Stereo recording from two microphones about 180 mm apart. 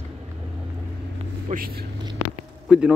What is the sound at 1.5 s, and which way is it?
Speech, 55° right (ahead or behind).